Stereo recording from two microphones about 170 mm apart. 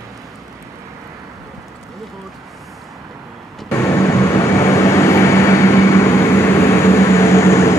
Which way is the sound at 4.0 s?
15° left (ahead or behind).